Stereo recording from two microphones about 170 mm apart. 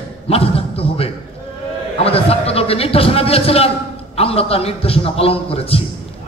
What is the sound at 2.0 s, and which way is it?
Speech, 35° left (ahead or behind).